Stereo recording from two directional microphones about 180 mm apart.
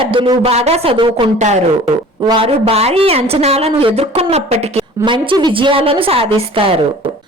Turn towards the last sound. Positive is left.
turn(degrees=-30)  # may be behind; listen again after turning